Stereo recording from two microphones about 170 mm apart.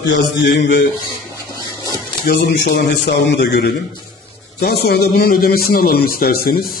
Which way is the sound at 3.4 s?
80° left.